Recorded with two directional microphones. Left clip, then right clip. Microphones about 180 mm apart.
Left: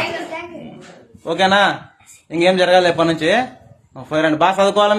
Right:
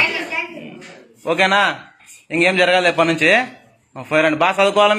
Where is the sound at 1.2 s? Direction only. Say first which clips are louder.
Left 1 dB; centre (ahead or behind).